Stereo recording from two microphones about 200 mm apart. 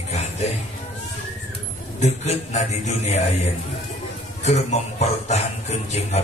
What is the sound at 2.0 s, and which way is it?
A man's voice, 35° left (ahead or behind).